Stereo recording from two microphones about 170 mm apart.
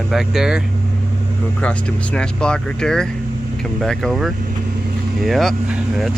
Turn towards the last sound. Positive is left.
turn(degrees=-5)  # may be behind; listen again after turning